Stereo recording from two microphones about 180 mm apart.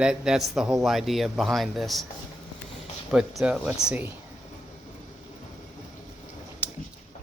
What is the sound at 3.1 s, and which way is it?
Speech, centre (ahead or behind).